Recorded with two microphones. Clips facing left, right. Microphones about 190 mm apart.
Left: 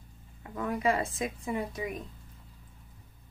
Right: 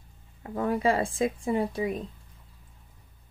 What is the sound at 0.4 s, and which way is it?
Speech, 30° right (ahead or behind).